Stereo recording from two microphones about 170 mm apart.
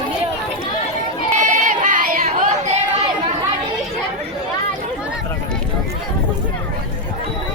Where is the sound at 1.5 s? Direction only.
45° right (ahead or behind).